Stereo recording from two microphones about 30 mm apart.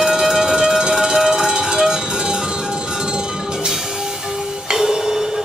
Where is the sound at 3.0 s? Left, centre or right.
Right.